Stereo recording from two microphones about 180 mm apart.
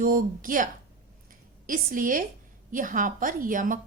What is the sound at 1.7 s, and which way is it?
A woman's voice, 50° right (ahead or behind).